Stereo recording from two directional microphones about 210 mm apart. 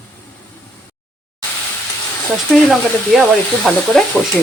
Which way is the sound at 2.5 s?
Centre (ahead or behind).